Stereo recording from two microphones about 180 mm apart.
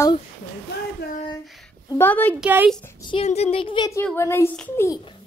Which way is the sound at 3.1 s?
35° left (ahead or behind).